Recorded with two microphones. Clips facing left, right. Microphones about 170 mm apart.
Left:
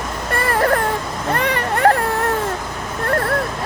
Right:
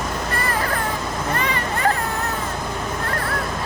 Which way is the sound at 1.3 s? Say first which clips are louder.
Left 7 dB; 65° left (ahead or behind).